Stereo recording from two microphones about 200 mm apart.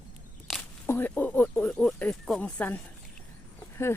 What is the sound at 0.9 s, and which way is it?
Speech, 10° left (ahead or behind).